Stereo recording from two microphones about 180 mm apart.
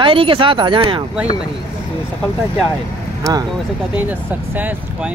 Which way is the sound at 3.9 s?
10° right (ahead or behind).